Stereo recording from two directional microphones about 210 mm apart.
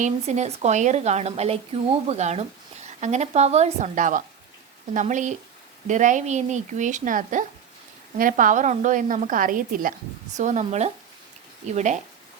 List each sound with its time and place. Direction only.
0.0 s speech: 30° right (ahead or behind)